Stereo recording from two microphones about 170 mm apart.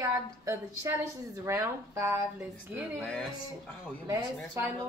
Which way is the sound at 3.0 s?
5° left (ahead or behind).